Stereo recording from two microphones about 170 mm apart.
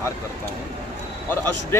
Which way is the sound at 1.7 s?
15° left (ahead or behind).